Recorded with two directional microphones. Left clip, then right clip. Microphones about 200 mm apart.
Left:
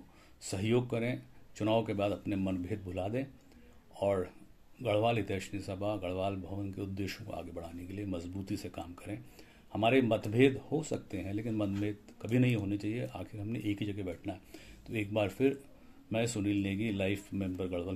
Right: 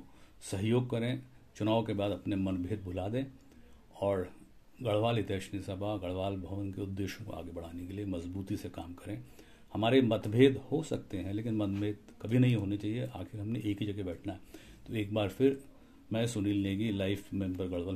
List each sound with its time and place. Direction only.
0.5 s speech: 10° right (ahead or behind)